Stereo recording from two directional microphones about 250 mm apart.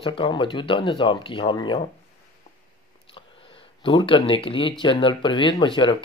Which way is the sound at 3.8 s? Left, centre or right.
Left.